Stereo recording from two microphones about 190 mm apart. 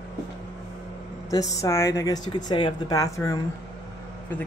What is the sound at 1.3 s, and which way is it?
Speech, 20° left (ahead or behind).